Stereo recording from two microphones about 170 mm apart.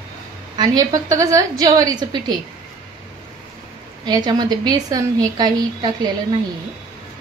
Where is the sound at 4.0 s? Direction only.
25° right (ahead or behind).